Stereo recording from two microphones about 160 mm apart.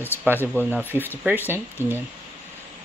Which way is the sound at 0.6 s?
10° right (ahead or behind).